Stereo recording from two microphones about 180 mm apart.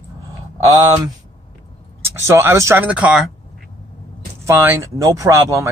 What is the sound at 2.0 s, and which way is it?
A man's voice, 15° right (ahead or behind).